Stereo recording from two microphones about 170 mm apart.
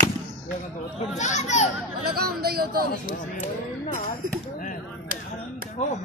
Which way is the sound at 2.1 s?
65° right (ahead or behind).